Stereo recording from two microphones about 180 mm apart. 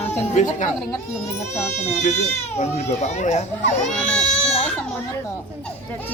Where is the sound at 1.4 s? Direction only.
15° left (ahead or behind).